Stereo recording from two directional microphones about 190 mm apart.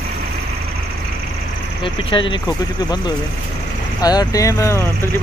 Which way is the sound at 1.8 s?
25° left (ahead or behind).